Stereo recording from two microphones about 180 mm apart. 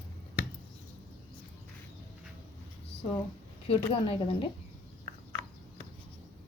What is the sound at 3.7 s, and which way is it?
Speech, 30° left (ahead or behind).